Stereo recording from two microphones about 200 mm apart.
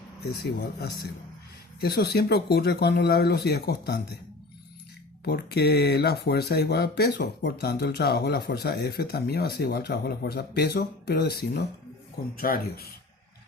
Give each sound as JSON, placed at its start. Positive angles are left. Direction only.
{"t": 0.3, "sound": "speech", "side_deg": 55}
{"t": 5.2, "sound": "speech", "side_deg": 55}